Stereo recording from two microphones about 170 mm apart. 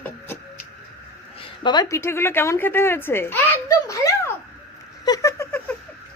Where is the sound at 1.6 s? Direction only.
25° left (ahead or behind).